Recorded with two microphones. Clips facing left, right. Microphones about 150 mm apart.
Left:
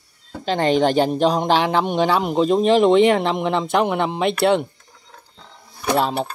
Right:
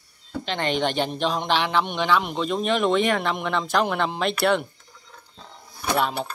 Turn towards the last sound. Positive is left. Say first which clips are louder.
# left 4 dB
turn(degrees=30)  # may be behind; listen again after turning